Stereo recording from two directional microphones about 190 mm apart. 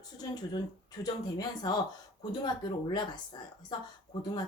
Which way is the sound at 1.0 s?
20° left (ahead or behind).